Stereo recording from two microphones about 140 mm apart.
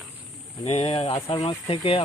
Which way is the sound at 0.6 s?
45° left (ahead or behind).